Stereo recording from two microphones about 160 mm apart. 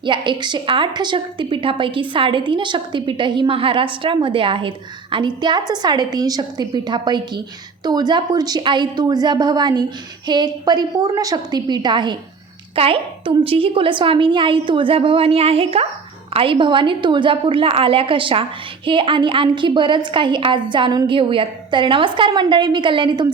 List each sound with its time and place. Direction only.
0.0 s a woman's voice: 30° right (ahead or behind)